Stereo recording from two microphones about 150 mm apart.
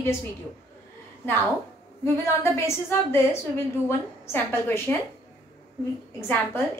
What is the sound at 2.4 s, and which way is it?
A woman's voice, 15° left (ahead or behind).